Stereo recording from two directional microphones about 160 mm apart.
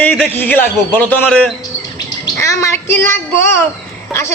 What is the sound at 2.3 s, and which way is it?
A man's voice, 20° left (ahead or behind).